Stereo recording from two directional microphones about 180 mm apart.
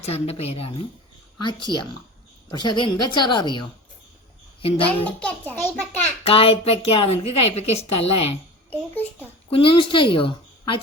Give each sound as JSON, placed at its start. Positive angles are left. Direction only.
{"t": 0.0, "sound": "a woman's voice", "side_deg": 35}
{"t": 5.0, "sound": "a child's voice", "side_deg": 10}
{"t": 6.2, "sound": "a woman's voice", "side_deg": 30}
{"t": 9.5, "sound": "a woman's voice", "side_deg": 30}